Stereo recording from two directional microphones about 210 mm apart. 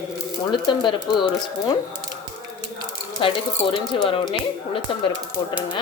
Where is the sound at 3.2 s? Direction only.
25° left (ahead or behind).